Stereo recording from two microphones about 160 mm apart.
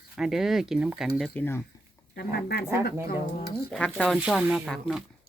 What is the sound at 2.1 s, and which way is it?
Speech, 80° left.